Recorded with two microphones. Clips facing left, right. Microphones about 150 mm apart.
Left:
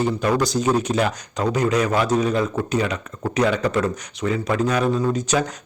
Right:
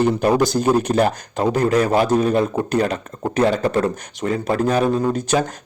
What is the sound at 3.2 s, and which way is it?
Speech, 20° right (ahead or behind).